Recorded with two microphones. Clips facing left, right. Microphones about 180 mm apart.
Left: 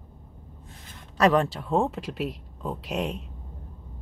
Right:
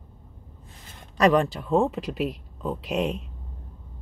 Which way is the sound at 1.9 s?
20° right (ahead or behind).